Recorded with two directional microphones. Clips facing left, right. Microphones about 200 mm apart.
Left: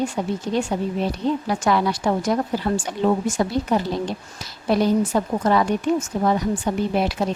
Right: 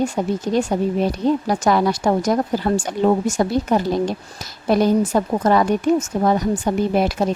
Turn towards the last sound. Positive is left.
turn(degrees=-45)  # may be behind; listen again after turning